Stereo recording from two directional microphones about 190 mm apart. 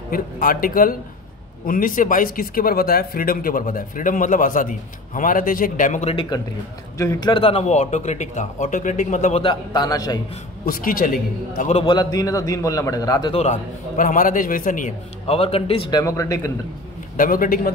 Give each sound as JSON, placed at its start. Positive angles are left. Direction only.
{"t": 0.1, "sound": "speech", "side_deg": 50}
{"t": 7.0, "sound": "speech", "side_deg": 20}
{"t": 9.4, "sound": "a man's voice", "side_deg": 25}
{"t": 10.6, "sound": "speech", "side_deg": 45}
{"t": 11.7, "sound": "a man's voice", "side_deg": 25}
{"t": 13.3, "sound": "speech", "side_deg": 35}
{"t": 15.2, "sound": "speech", "side_deg": 30}
{"t": 16.0, "sound": "speech", "side_deg": 20}
{"t": 17.2, "sound": "speech", "side_deg": 45}